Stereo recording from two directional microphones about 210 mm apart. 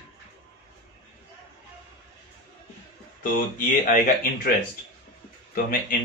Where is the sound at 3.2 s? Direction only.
40° left (ahead or behind).